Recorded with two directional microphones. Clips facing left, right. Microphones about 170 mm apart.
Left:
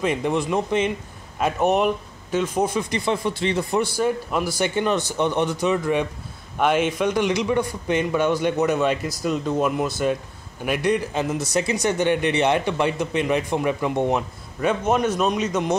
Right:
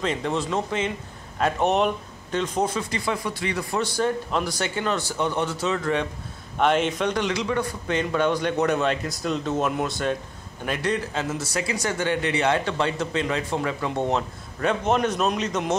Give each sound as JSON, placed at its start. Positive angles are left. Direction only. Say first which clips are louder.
{"t": 0.0, "sound": "speech", "louder": "left 3 dB", "side_deg": 15}
{"t": 1.4, "sound": "speech", "louder": "left 2 dB", "side_deg": 5}
{"t": 3.1, "sound": "speech", "louder": "left 5 dB", "side_deg": 25}
{"t": 3.8, "sound": "speech", "louder": "left 2 dB", "side_deg": 10}
{"t": 4.6, "sound": "speech", "louder": "left 4 dB", "side_deg": 20}